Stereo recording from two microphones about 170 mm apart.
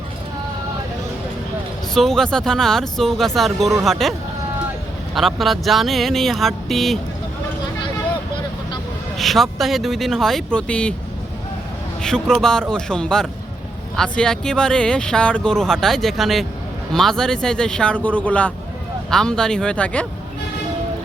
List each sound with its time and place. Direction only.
1.9 s speech: 5° left (ahead or behind)
5.1 s speech: centre (ahead or behind)
9.1 s speech: centre (ahead or behind)
12.0 s speech: 5° left (ahead or behind)